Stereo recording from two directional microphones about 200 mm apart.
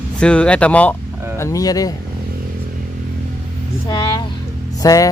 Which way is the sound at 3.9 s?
20° left (ahead or behind).